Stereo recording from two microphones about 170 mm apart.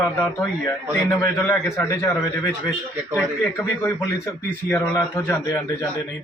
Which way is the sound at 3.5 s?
15° left (ahead or behind).